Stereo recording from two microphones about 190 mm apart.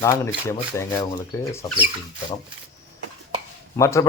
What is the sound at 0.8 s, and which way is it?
Speech, 15° left (ahead or behind).